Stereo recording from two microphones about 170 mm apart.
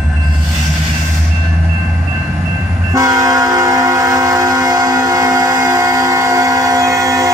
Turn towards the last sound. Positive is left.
turn(degrees=-20)  # may be behind; listen again after turning